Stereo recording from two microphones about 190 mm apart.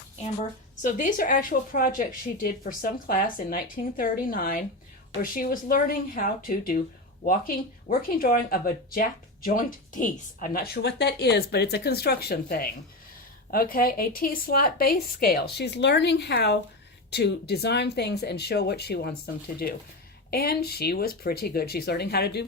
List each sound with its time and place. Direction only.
0.8 s speech: 40° left (ahead or behind); by 22.4 s 60° left (ahead or behind)